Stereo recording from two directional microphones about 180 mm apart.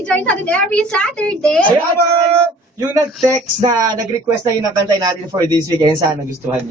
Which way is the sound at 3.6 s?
20° right (ahead or behind).